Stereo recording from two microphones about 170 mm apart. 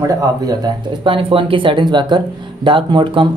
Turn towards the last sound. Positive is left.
turn(degrees=-30)  # may be behind; listen again after turning